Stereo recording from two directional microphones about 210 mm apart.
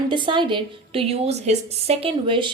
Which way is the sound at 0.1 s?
20° right (ahead or behind).